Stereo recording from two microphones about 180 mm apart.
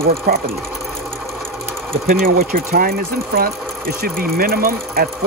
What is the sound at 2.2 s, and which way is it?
Speech, 55° right (ahead or behind).